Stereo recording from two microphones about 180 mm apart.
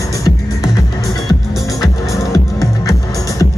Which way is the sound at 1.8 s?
20° left (ahead or behind).